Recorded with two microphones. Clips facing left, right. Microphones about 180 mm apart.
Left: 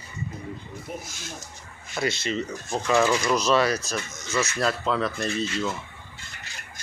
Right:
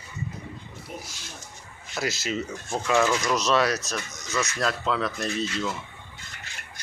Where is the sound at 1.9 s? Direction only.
Centre (ahead or behind).